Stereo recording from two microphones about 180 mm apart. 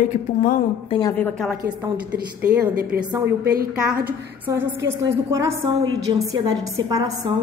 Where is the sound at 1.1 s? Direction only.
10° left (ahead or behind).